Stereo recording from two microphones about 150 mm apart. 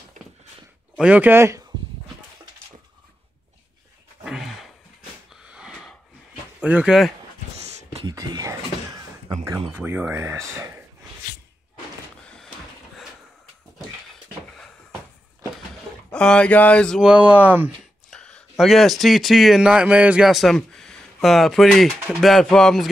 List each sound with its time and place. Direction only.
0.2 s walk: 60° right (ahead or behind)
0.9 s speech: 10° right (ahead or behind)
4.2 s a sound: 5° right (ahead or behind)
5.3 s wheeze: 5° right (ahead or behind)
6.6 s bird: 5° right (ahead or behind)
8.1 s a sound: 25° right (ahead or behind)
9.7 s speech: 15° right (ahead or behind)
16.1 s speech: 5° left (ahead or behind)
17.0 s speech: 10° right (ahead or behind)
18.1 s a man's voice: 5° left (ahead or behind)
22.1 s bird: centre (ahead or behind)